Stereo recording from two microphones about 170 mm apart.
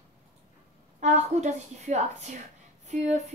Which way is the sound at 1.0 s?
45° right (ahead or behind).